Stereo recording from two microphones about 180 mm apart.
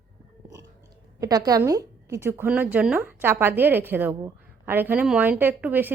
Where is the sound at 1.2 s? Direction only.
20° right (ahead or behind).